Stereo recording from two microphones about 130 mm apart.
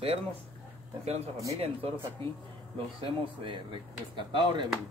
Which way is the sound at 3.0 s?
40° right (ahead or behind).